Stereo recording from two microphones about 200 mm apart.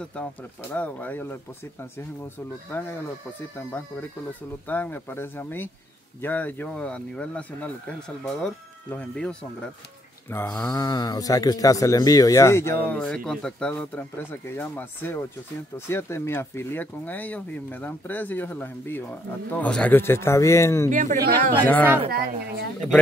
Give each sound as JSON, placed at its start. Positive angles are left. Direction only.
{"t": 0.0, "sound": "speech", "side_deg": 5}
{"t": 20.9, "sound": "speech", "side_deg": -40}